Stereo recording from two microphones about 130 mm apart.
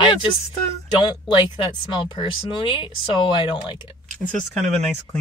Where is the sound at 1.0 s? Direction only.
35° left (ahead or behind).